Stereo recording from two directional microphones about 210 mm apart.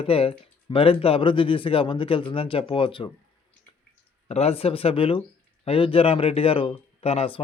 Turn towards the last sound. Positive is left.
turn(degrees=25)  # may be behind; listen again after turning